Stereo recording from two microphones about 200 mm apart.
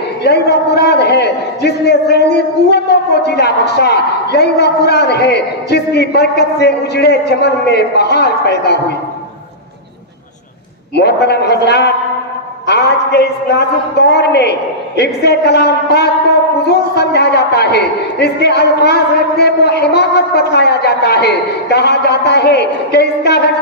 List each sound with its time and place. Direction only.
0.2 s a man's voice: 55° left (ahead or behind)
11.0 s a woman's voice: 55° left (ahead or behind)